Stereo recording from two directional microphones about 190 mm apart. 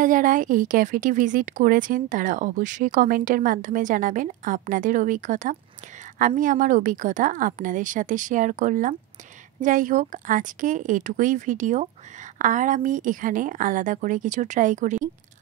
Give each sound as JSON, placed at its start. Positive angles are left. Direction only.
{"t": 0.0, "sound": "speech", "side_deg": -45}